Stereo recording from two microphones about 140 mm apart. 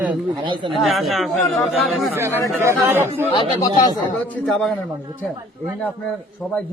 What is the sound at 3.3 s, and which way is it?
Speech, 35° left (ahead or behind).